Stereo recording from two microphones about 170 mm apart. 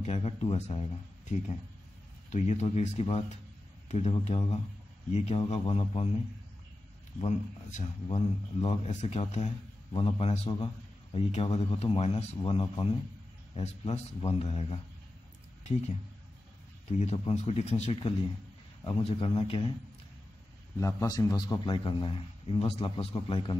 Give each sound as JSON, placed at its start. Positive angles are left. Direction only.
{"t": 0.0, "sound": "a man's voice", "side_deg": 40}
{"t": 2.2, "sound": "a man's voice", "side_deg": 40}
{"t": 7.2, "sound": "a man's voice", "side_deg": 40}
{"t": 17.0, "sound": "a man's voice", "side_deg": 40}
{"t": 20.8, "sound": "a man's voice", "side_deg": 20}